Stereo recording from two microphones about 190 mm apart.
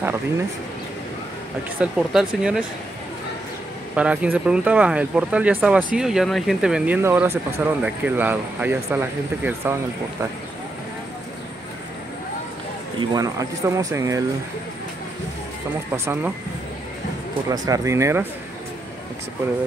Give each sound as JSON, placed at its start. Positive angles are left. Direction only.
{"t": 1.8, "sound": "speech", "side_deg": -5}
{"t": 3.9, "sound": "speech", "side_deg": -5}
{"t": 13.1, "sound": "speech", "side_deg": -15}
{"t": 15.9, "sound": "speech", "side_deg": -10}
{"t": 17.5, "sound": "speech", "side_deg": -20}